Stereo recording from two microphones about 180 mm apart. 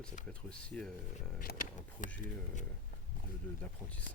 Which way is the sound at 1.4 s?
50° left (ahead or behind).